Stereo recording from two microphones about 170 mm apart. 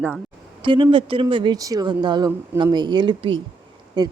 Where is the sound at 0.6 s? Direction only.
30° right (ahead or behind).